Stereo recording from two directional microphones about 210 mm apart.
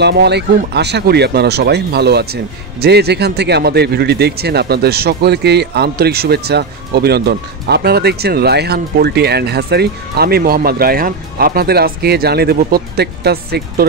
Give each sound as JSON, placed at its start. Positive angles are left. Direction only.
{"t": 0.0, "sound": "speech", "side_deg": -50}